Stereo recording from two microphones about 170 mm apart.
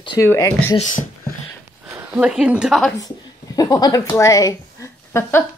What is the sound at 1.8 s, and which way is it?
A woman's voice, 10° right (ahead or behind).